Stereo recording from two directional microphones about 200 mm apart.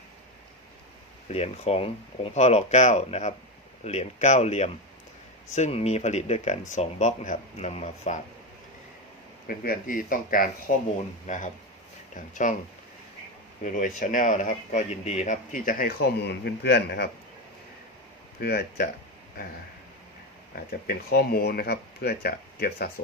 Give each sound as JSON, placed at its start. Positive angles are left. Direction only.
{"t": 1.3, "sound": "speech", "side_deg": 30}
{"t": 9.5, "sound": "speech", "side_deg": 45}
{"t": 13.6, "sound": "speech", "side_deg": 40}
{"t": 18.3, "sound": "speech", "side_deg": 50}
{"t": 20.7, "sound": "speech", "side_deg": 50}